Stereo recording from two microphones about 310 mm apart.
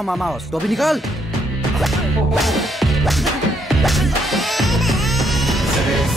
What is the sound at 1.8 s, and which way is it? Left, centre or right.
Music, centre.